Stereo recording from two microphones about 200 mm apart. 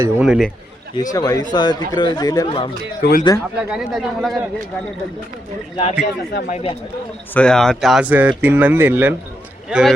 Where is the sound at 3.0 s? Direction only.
50° left (ahead or behind).